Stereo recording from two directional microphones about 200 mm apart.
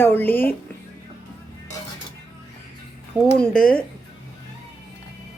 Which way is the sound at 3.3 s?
5° left (ahead or behind).